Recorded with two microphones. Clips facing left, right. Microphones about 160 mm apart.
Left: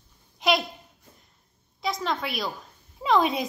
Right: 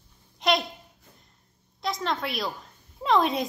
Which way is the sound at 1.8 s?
Centre (ahead or behind).